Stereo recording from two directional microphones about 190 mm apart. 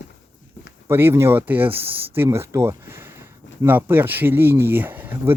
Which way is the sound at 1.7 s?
30° right (ahead or behind).